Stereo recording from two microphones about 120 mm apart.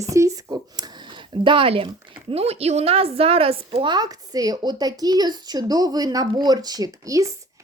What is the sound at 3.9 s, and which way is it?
Speech, 35° right (ahead or behind).